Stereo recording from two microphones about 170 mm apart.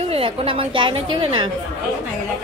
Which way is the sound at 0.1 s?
30° right (ahead or behind).